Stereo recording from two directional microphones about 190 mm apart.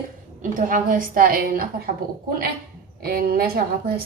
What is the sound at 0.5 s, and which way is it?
A woman's voice, 45° right (ahead or behind).